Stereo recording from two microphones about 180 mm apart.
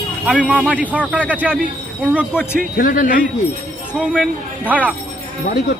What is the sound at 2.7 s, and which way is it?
Speech, 50° left (ahead or behind).